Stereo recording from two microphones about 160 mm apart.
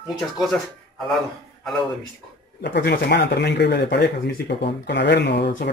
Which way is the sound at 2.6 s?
90° left.